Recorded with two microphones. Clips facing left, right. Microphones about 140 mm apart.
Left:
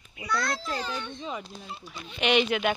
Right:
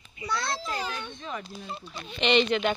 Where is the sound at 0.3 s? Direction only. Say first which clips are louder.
Left 2 dB; 30° right (ahead or behind).